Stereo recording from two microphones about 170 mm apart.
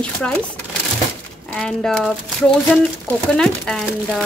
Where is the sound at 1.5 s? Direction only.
5° left (ahead or behind).